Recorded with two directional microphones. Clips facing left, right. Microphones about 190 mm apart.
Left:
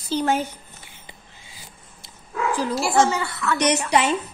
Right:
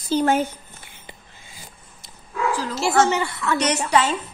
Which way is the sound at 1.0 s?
50° right (ahead or behind).